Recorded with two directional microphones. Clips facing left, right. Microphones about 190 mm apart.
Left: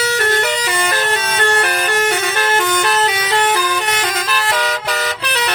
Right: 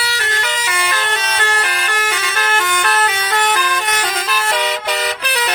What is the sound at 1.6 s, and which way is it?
Vehicle, 55° left (ahead or behind).